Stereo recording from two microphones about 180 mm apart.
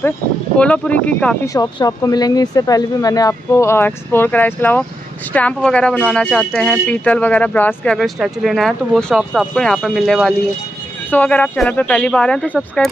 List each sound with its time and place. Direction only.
0.6 s speech: 5° left (ahead or behind)
1.5 s speech: 20° left (ahead or behind); by 12.9 s 5° left (ahead or behind)